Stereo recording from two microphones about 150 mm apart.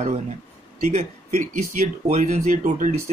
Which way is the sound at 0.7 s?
60° right (ahead or behind).